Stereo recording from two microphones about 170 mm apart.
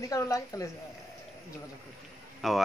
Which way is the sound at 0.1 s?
20° left (ahead or behind).